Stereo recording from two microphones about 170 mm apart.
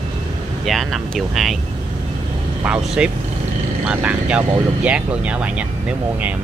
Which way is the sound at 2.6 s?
5° right (ahead or behind).